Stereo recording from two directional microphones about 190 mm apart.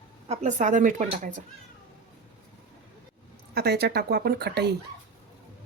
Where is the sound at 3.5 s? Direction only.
55° right (ahead or behind).